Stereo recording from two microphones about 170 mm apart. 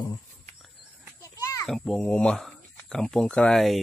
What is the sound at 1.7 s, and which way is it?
Speech, 5° left (ahead or behind).